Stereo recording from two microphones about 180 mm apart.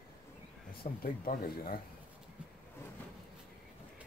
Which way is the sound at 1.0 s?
55° left (ahead or behind).